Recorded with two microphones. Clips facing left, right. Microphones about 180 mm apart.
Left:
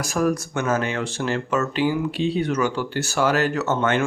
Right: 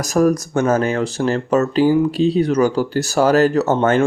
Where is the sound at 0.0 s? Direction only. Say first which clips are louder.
Right 6 dB; 40° right (ahead or behind).